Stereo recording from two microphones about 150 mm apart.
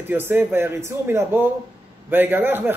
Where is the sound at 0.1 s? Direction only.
15° right (ahead or behind).